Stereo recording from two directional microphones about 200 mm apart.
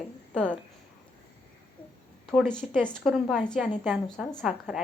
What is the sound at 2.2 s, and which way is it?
A woman's voice, centre (ahead or behind).